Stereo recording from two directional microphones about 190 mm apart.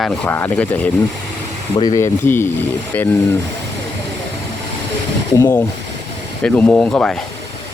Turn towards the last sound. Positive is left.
turn(degrees=5)  # may be behind; listen again after turning